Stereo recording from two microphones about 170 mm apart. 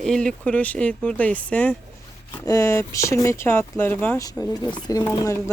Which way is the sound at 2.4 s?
20° left (ahead or behind).